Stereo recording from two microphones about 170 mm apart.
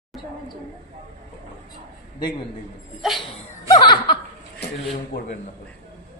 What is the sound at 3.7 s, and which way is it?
Laughter, 25° left (ahead or behind).